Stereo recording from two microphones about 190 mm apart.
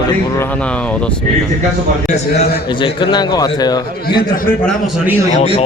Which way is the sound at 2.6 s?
25° left (ahead or behind).